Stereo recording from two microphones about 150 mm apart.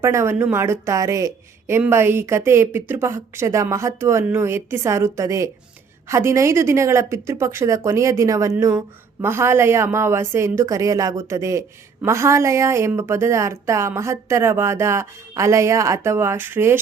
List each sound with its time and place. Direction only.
0.0 s a woman's voice: 20° right (ahead or behind)